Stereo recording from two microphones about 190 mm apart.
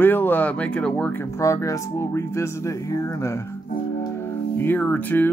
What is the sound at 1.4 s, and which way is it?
Speech, 15° left (ahead or behind).